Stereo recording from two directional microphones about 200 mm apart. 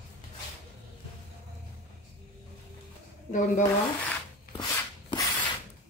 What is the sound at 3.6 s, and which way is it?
Rub, 20° left (ahead or behind).